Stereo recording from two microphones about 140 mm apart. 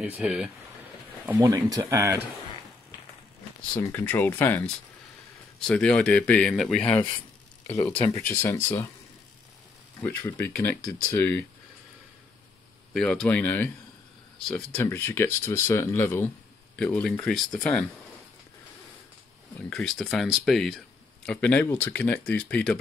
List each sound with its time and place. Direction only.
0.0 s speech: 10° right (ahead or behind)
1.4 s speech: 25° right (ahead or behind)
3.7 s speech: 15° left (ahead or behind)
7.6 s speech: 25° left (ahead or behind)
10.0 s speech: 15° left (ahead or behind)
12.9 s speech: 5° left (ahead or behind)
14.8 s speech: 15° left (ahead or behind)
19.7 s speech: 5° left (ahead or behind)